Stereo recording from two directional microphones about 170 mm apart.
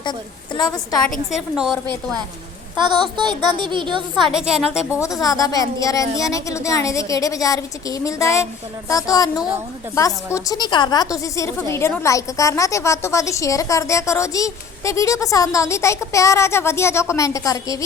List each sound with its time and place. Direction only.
0.0 s a woman's voice: 25° left (ahead or behind)
1.4 s a woman's voice: centre (ahead or behind)
2.7 s a woman's voice: 25° right (ahead or behind)
4.4 s a woman's voice: 5° right (ahead or behind)
5.2 s a woman's voice: 20° left (ahead or behind)